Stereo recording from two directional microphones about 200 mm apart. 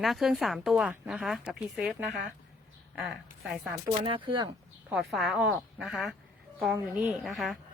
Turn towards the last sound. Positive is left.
turn(degrees=0)  # may be behind; listen again after turning